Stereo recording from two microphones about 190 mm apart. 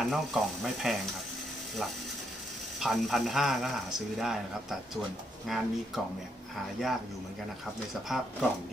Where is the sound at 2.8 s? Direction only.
Centre (ahead or behind).